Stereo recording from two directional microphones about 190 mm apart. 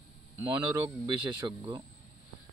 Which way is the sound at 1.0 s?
20° right (ahead or behind).